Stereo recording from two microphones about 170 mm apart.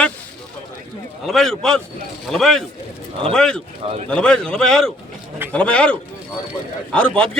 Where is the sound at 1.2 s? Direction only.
Centre (ahead or behind).